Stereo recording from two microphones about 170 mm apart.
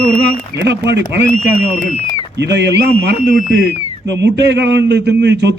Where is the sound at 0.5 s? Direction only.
90° right.